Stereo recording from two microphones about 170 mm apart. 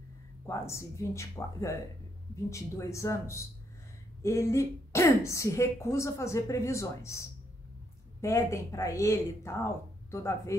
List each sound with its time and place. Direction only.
0.5 s a woman's voice: 15° left (ahead or behind)